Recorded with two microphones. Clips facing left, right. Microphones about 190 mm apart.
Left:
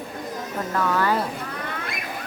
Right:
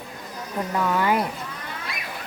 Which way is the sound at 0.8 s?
15° right (ahead or behind).